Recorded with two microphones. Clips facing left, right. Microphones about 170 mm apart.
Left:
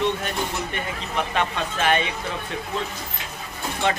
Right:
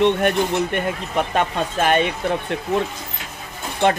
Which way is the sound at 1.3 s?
45° right (ahead or behind).